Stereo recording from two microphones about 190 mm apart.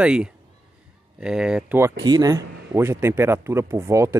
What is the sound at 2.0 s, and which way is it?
Speech, 20° right (ahead or behind).